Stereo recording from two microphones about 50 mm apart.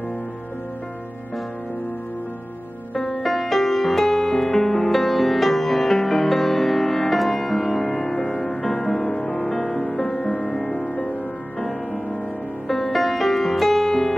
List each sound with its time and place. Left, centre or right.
3.2 s music: centre
7.7 s music: left
12.6 s music: centre